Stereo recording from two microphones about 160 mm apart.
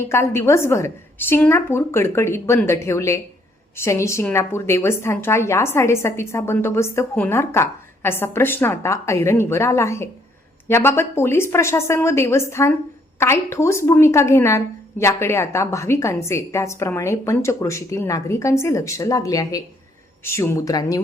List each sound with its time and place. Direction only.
0.0 s a woman's voice: 15° left (ahead or behind)